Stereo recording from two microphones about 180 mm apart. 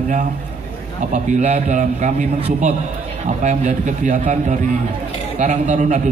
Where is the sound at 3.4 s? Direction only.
40° right (ahead or behind).